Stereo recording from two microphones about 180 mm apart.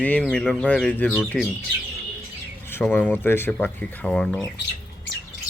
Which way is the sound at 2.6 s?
10° left (ahead or behind).